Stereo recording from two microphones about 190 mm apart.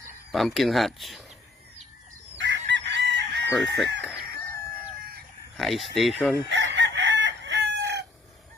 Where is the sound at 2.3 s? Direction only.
70° right (ahead or behind).